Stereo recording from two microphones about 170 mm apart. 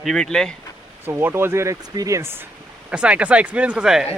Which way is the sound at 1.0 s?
15° right (ahead or behind).